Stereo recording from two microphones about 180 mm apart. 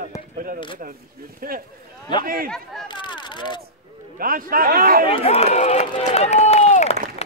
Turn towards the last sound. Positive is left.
turn(degrees=35)  # may be behind; listen again after turning